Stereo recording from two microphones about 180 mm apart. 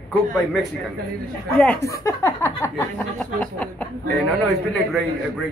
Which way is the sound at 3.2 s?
5° left (ahead or behind).